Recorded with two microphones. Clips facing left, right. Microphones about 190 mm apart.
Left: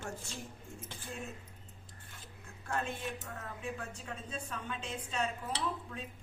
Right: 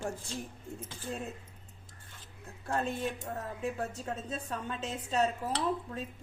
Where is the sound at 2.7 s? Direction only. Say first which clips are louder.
Right 5 dB; 35° right (ahead or behind).